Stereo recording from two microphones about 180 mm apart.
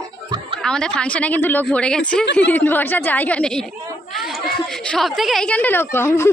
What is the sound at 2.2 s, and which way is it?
Speech, 75° left (ahead or behind).